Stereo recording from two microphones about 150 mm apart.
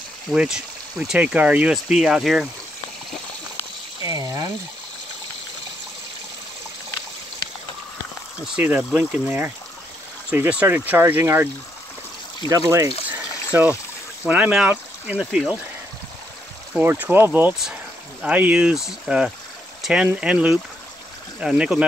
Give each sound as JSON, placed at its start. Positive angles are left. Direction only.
{"t": 0.3, "sound": "speech", "side_deg": -5}
{"t": 4.0, "sound": "water", "side_deg": -20}
{"t": 8.5, "sound": "speech", "side_deg": -10}
{"t": 12.4, "sound": "speech", "side_deg": -20}
{"t": 13.1, "sound": "a sound", "side_deg": -10}
{"t": 14.2, "sound": "speech", "side_deg": -10}
{"t": 16.7, "sound": "speech", "side_deg": -10}